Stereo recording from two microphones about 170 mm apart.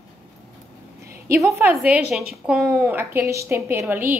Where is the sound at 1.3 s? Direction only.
15° right (ahead or behind).